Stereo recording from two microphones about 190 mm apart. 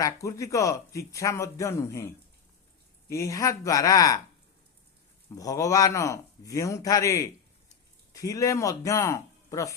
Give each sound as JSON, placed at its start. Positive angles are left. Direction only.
{"t": 0.0, "sound": "speech", "side_deg": 15}
{"t": 3.1, "sound": "speech", "side_deg": 15}
{"t": 5.3, "sound": "speech", "side_deg": 20}